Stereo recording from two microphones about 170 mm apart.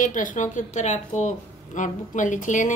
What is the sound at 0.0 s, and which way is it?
A woman's voice, 50° left (ahead or behind).